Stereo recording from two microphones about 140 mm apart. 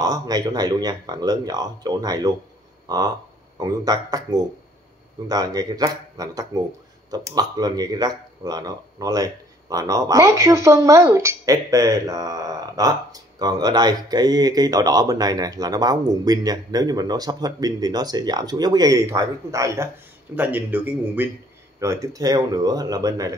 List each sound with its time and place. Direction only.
0.0 s a man's voice: 25° right (ahead or behind)